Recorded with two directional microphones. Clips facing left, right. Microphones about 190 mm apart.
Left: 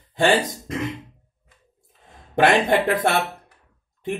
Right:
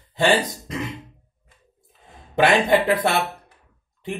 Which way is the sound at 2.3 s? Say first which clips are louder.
Even; 50° left (ahead or behind).